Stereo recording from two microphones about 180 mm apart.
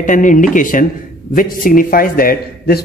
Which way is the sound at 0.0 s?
45° left (ahead or behind).